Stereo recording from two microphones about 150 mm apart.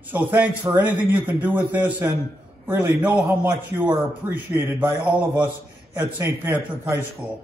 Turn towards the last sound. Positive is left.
turn(degrees=-15)  # may be behind; listen again after turning